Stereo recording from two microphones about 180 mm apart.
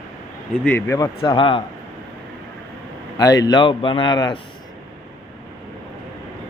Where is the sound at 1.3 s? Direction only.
30° left (ahead or behind).